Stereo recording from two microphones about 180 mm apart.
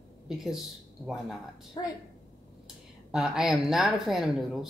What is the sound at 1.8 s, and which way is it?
Speech, 25° left (ahead or behind).